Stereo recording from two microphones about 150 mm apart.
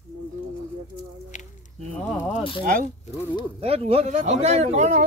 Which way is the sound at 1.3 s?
55° left (ahead or behind).